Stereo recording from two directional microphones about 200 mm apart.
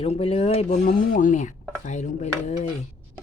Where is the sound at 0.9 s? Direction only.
45° left (ahead or behind).